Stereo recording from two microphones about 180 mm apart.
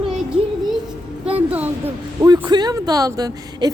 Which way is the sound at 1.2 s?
10° right (ahead or behind).